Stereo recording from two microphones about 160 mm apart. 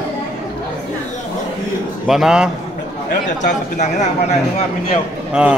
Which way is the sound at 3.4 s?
50° left (ahead or behind).